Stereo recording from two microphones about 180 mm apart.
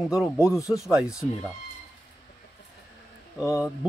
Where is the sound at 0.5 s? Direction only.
15° left (ahead or behind).